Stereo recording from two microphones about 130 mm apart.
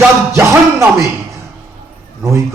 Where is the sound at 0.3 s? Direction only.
20° right (ahead or behind).